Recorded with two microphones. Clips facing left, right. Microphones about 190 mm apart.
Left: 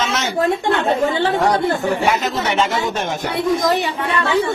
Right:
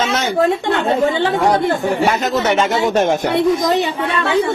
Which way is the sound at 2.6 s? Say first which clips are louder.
Right 4 dB; 45° right (ahead or behind).